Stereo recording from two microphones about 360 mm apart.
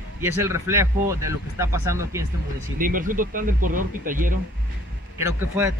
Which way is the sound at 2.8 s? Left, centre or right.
Right.